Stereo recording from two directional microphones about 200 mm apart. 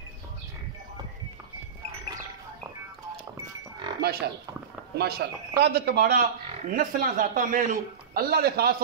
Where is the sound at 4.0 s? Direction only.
50° right (ahead or behind).